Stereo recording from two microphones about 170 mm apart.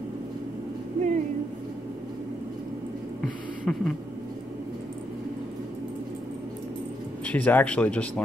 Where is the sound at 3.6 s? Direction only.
Centre (ahead or behind).